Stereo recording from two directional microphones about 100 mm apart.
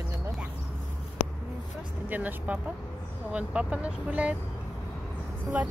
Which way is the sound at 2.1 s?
15° right (ahead or behind).